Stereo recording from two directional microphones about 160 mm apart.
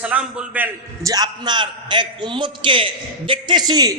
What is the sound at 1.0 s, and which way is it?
A man's voice, 25° right (ahead or behind).